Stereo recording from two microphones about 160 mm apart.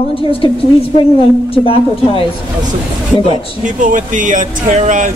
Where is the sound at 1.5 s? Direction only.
35° left (ahead or behind).